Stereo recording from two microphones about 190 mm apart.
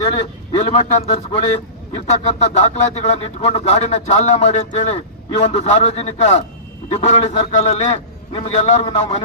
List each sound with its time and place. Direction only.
0.0 s a man's voice: 25° left (ahead or behind)
0.6 s speech: 35° left (ahead or behind)